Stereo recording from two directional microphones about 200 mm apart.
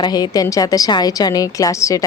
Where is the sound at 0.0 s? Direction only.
20° left (ahead or behind).